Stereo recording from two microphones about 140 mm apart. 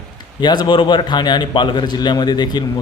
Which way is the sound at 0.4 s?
30° left (ahead or behind).